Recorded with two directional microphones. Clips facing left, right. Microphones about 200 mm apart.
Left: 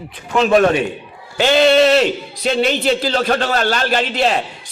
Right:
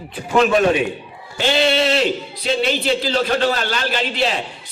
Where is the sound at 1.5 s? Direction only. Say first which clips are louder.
Left 6 dB; 50° left (ahead or behind).